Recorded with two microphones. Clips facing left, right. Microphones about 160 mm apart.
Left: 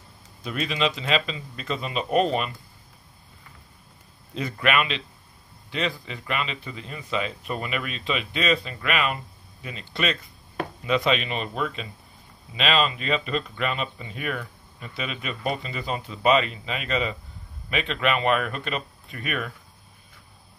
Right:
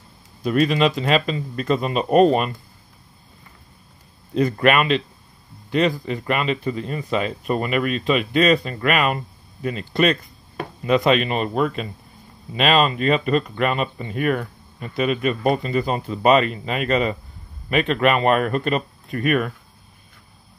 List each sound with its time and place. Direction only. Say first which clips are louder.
0.4 s speech: right 8 dB; 45° right (ahead or behind)
4.3 s speech: right 8 dB; 45° right (ahead or behind)